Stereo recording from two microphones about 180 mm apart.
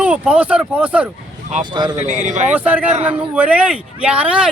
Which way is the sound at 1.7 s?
25° right (ahead or behind).